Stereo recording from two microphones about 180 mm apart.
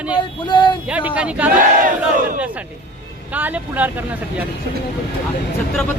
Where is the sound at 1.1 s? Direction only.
5° right (ahead or behind).